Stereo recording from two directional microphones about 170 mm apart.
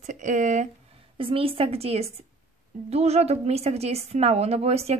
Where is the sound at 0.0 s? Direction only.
45° right (ahead or behind).